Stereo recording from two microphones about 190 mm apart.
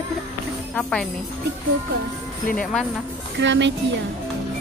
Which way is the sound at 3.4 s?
70° right (ahead or behind).